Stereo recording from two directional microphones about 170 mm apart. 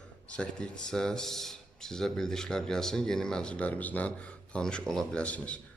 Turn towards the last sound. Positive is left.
turn(degrees=5)  # may be behind; listen again after turning